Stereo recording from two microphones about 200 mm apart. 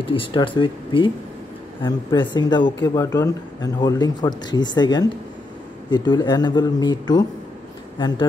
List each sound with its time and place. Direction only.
0.0 s speech: 25° left (ahead or behind)